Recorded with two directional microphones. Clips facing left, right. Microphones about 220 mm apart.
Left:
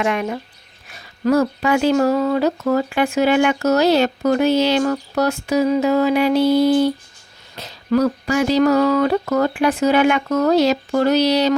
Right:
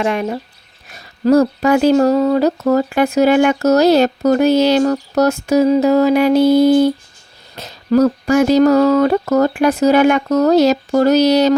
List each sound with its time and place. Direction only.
0.0 s speech: 35° right (ahead or behind)